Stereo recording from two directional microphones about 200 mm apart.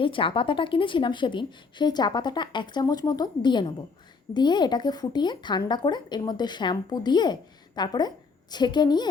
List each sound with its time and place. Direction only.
0.0 s a woman's voice: 25° left (ahead or behind)